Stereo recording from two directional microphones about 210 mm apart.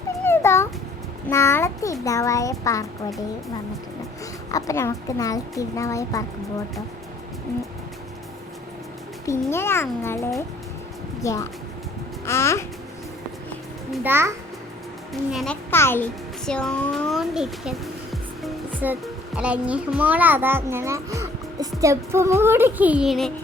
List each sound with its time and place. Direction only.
0.3 s a sound: 10° left (ahead or behind)
1.3 s a child's voice: 10° left (ahead or behind)
4.5 s a child's voice: 15° left (ahead or behind)
9.5 s a child's voice: 10° left (ahead or behind)
13.9 s a child's voice: 10° right (ahead or behind)
15.3 s a child's voice: centre (ahead or behind)
15.7 s a child's voice: 10° left (ahead or behind)